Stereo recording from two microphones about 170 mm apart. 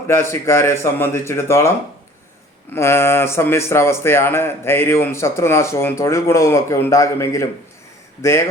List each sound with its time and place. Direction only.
0.1 s speech: 15° left (ahead or behind)
2.7 s speech: 15° left (ahead or behind)